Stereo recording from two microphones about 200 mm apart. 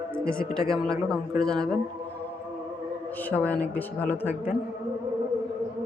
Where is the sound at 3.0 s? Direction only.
10° left (ahead or behind).